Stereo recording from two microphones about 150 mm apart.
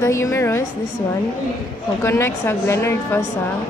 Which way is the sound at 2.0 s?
15° left (ahead or behind).